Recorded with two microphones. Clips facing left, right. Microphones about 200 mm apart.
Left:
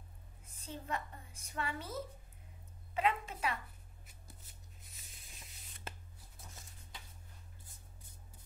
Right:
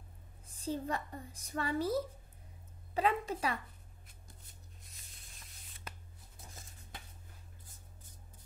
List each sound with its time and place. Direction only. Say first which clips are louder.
0.6 s a woman's voice: right 6 dB; 35° right (ahead or behind)